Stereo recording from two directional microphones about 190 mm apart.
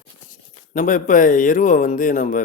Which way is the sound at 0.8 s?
45° left (ahead or behind).